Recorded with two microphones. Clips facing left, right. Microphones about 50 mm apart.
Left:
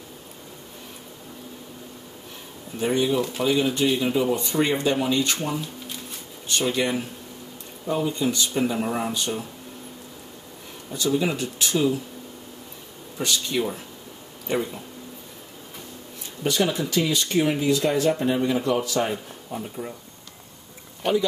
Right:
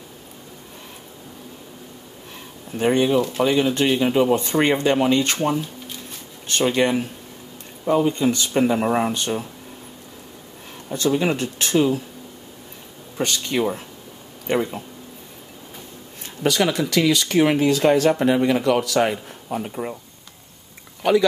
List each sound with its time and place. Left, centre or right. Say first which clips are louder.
2.8 s speech: right 4 dB; right
8.8 s speech: right 6 dB; right
10.9 s speech: right 3 dB; right
13.2 s speech: right 3 dB; right
16.4 s speech: right 4 dB; right